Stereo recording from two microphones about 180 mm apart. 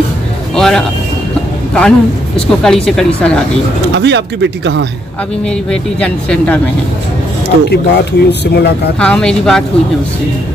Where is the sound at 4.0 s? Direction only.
75° right (ahead or behind).